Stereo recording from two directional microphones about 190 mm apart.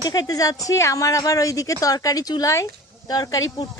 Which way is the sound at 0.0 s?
20° left (ahead or behind).